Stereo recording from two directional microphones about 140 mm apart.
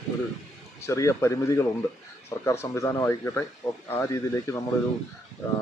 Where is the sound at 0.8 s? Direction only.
20° left (ahead or behind).